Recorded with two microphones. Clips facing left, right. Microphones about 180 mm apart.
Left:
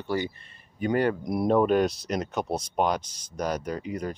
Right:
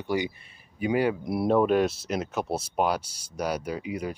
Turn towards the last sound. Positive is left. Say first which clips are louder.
# even
turn(degrees=-10)  # may be behind; listen again after turning